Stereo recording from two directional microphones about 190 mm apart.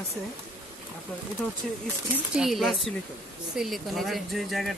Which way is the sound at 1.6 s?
Centre (ahead or behind).